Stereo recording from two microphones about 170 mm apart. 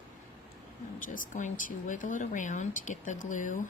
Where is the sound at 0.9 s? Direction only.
50° left (ahead or behind).